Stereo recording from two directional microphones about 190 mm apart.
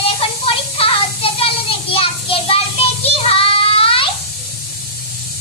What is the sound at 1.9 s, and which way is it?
Child singing, 30° left (ahead or behind).